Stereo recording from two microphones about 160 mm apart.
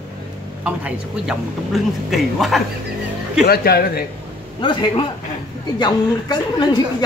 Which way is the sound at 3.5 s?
75° left (ahead or behind).